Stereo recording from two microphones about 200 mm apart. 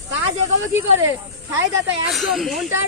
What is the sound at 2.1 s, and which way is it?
Speech, centre (ahead or behind).